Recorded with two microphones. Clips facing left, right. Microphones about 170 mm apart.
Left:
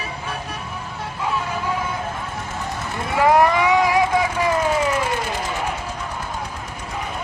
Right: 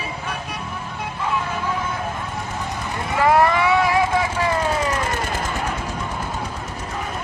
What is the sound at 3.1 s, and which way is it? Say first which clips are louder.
Vehicle: left 1 dB; 15° left (ahead or behind).